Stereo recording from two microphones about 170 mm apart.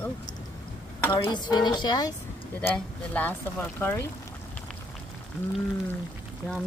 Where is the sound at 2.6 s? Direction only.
5° left (ahead or behind).